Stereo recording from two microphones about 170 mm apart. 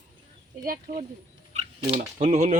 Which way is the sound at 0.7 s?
50° right (ahead or behind).